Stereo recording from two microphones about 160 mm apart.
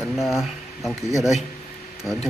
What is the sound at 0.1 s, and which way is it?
Speech, centre (ahead or behind).